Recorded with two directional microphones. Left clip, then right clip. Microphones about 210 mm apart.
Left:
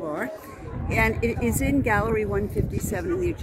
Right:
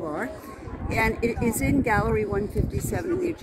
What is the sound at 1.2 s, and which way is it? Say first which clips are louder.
Speech: even; 55° left (ahead or behind).